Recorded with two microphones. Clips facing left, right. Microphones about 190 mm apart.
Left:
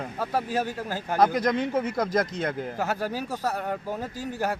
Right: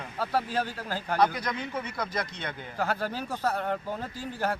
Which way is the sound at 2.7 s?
10° left (ahead or behind).